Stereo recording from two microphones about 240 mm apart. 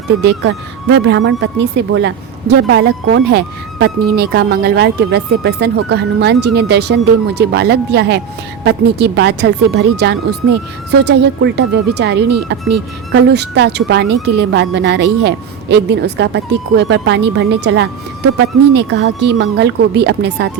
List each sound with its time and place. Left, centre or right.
0.2 s speech: right